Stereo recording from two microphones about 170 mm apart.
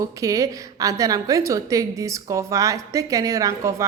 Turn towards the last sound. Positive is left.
turn(degrees=-20)  # may be behind; listen again after turning